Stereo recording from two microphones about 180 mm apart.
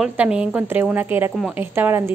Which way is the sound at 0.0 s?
5° right (ahead or behind).